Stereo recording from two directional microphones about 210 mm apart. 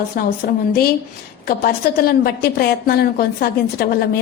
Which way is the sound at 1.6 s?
45° left (ahead or behind).